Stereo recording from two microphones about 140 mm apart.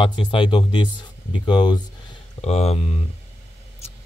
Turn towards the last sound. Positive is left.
turn(degrees=50)  # may be behind; listen again after turning